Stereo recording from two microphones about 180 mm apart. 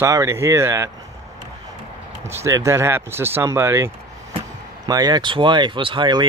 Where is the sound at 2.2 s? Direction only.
15° right (ahead or behind).